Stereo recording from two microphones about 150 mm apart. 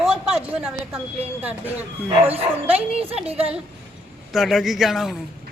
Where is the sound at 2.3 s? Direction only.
40° right (ahead or behind).